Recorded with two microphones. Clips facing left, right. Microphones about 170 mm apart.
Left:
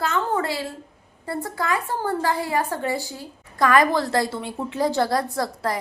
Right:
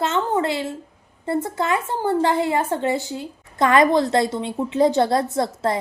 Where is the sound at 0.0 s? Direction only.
25° right (ahead or behind).